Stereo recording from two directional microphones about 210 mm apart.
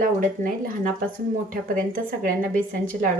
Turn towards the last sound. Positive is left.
turn(degrees=-40)  # may be behind; listen again after turning